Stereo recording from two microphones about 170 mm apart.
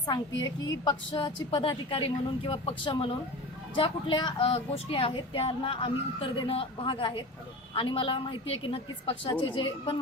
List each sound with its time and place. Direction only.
0.0 s a woman's voice: 25° left (ahead or behind)